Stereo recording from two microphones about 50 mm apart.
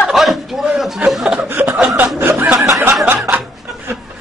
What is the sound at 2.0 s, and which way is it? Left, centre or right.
Speech, right.